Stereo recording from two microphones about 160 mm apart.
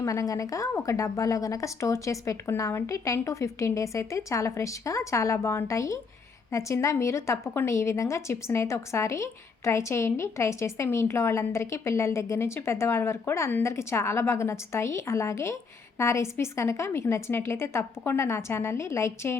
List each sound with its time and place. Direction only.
0.0 s a woman's voice: 20° left (ahead or behind)